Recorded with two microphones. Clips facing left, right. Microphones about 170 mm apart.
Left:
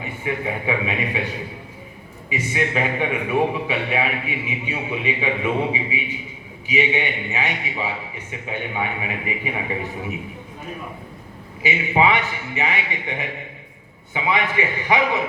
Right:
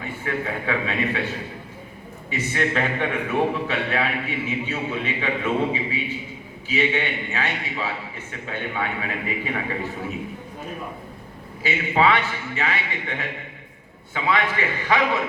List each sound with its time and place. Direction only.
0.0 s a man's voice: 15° left (ahead or behind)
2.3 s a man's voice: 10° left (ahead or behind)
11.6 s a man's voice: 15° left (ahead or behind)